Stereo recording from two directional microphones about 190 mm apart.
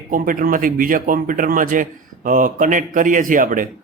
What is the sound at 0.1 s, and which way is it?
A man's voice, 45° right (ahead or behind).